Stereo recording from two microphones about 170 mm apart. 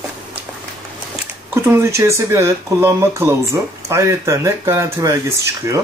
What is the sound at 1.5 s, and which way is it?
Speech, 15° right (ahead or behind).